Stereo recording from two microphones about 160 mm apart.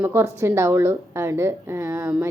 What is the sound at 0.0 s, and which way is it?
A woman's voice, 10° right (ahead or behind).